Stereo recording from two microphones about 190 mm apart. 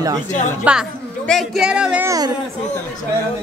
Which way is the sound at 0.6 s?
5° right (ahead or behind).